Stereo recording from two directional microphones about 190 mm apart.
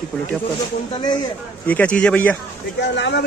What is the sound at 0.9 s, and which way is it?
Speech, 25° left (ahead or behind).